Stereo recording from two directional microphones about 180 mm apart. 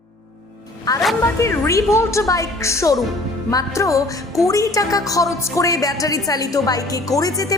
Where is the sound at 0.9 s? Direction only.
20° left (ahead or behind).